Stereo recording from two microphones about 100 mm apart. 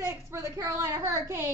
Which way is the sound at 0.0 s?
25° right (ahead or behind).